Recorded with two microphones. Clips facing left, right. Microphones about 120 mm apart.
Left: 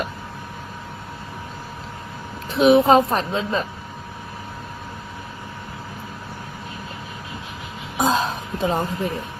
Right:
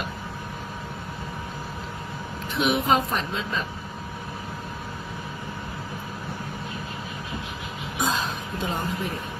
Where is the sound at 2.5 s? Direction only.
35° left (ahead or behind).